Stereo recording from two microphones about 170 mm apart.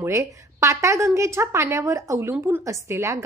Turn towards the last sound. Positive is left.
turn(degrees=-20)  # may be behind; listen again after turning